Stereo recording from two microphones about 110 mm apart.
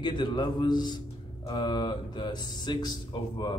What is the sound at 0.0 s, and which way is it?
A man's voice, 40° left (ahead or behind).